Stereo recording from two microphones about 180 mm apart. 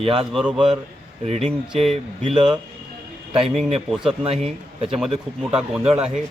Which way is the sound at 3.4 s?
Centre (ahead or behind).